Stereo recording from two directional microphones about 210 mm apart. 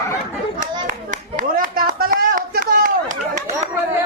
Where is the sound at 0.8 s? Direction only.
40° right (ahead or behind).